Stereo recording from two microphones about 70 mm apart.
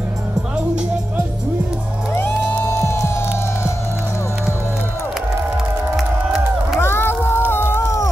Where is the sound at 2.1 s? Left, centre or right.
Left.